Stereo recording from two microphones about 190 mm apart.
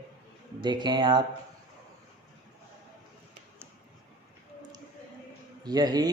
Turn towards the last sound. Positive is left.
turn(degrees=-20)  # may be behind; listen again after turning